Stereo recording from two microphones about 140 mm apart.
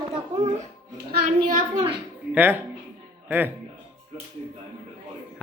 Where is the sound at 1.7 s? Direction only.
40° right (ahead or behind).